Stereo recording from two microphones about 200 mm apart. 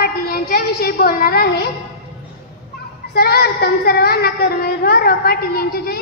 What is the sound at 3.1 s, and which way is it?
Child singing, 50° left (ahead or behind).